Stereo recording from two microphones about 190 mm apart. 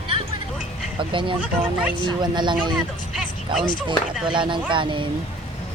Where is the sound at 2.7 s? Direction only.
5° right (ahead or behind).